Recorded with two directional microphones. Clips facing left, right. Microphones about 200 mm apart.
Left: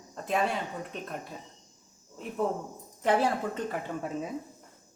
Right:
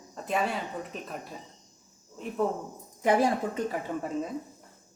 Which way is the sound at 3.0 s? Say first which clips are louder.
Right 2 dB; 10° right (ahead or behind).